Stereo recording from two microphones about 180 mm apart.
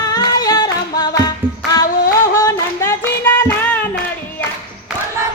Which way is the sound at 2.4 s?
15° left (ahead or behind).